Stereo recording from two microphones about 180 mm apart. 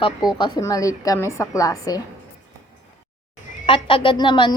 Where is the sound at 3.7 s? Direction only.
30° left (ahead or behind).